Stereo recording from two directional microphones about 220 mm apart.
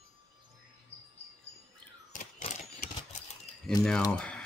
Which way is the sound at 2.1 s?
35° left (ahead or behind).